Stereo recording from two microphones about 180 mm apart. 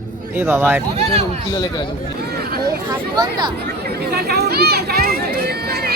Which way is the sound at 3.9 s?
60° right (ahead or behind).